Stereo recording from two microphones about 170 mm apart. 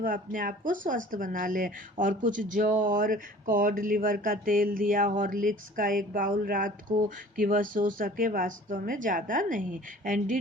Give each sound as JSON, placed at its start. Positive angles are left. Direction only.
{"t": 0.0, "sound": "speech", "side_deg": -55}